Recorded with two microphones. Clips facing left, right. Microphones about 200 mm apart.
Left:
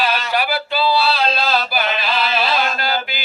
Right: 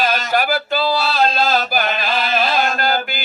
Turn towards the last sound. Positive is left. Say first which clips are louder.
# right 3 dB
turn(degrees=-50)  # may be behind; listen again after turning